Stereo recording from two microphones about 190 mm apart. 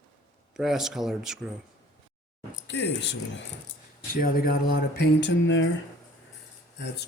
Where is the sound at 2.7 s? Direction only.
65° left (ahead or behind).